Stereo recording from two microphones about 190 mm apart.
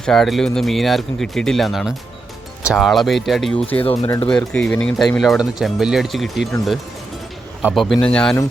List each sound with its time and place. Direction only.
0.0 s speech: centre (ahead or behind); by 4.2 s 15° left (ahead or behind)
4.3 s speech: 5° left (ahead or behind)